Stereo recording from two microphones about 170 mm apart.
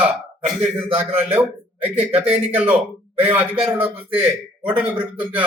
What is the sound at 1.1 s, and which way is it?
Speech, 10° right (ahead or behind).